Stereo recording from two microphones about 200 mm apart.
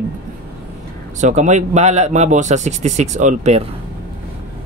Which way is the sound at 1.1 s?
35° right (ahead or behind).